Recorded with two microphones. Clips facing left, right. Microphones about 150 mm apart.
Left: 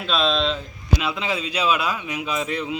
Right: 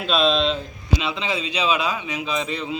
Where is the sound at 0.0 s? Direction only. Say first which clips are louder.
Right 2 dB; 5° right (ahead or behind).